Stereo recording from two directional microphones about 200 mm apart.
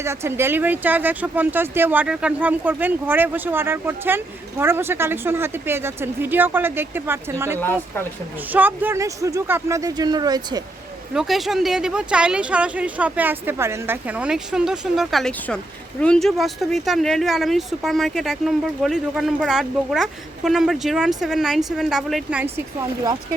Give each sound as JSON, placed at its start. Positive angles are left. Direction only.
{"t": 0.0, "sound": "speech", "side_deg": -15}
{"t": 7.6, "sound": "speech", "side_deg": 10}
{"t": 8.5, "sound": "speech", "side_deg": -10}
{"t": 11.1, "sound": "a woman's voice", "side_deg": 0}